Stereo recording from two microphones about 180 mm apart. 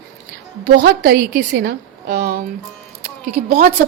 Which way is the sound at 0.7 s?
60° right (ahead or behind).